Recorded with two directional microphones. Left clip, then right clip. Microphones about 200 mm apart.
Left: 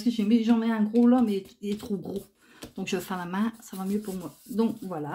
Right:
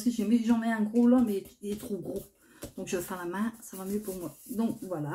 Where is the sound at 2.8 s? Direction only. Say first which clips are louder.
Left 3 dB; 40° left (ahead or behind).